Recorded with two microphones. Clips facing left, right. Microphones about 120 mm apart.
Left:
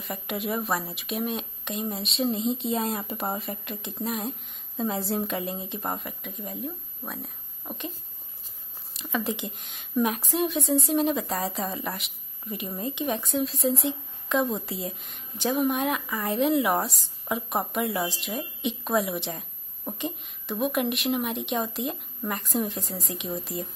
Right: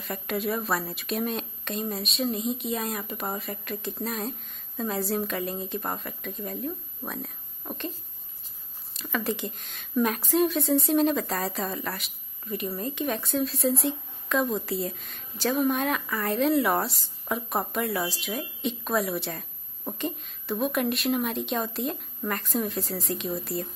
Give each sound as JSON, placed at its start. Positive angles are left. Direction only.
{"t": 0.0, "sound": "a woman's voice", "side_deg": 15}
{"t": 7.1, "sound": "a sound", "side_deg": 5}
{"t": 8.9, "sound": "a woman's voice", "side_deg": 15}